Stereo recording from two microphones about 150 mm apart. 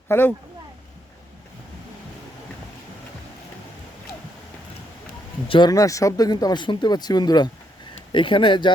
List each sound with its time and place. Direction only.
0.1 s speech: 15° left (ahead or behind)
5.5 s speech: 30° left (ahead or behind)